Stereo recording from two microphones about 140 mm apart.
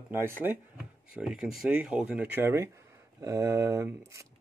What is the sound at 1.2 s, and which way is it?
Speech, centre (ahead or behind).